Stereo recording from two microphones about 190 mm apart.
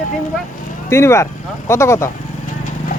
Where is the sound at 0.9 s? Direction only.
15° left (ahead or behind).